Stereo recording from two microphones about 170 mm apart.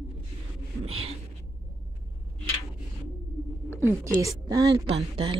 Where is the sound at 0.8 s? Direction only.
35° right (ahead or behind).